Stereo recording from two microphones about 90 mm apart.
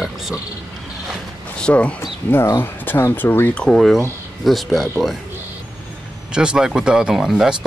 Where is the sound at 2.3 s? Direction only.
25° left (ahead or behind).